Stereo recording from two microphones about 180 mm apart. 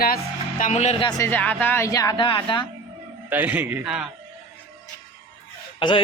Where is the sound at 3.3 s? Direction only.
10° right (ahead or behind).